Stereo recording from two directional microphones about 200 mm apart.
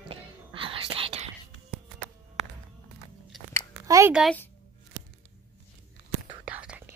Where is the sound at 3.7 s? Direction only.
15° right (ahead or behind).